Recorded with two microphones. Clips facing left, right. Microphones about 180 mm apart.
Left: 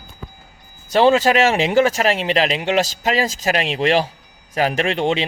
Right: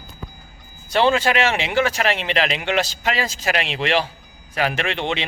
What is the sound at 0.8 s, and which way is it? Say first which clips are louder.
Speech: left 4 dB; 35° left (ahead or behind).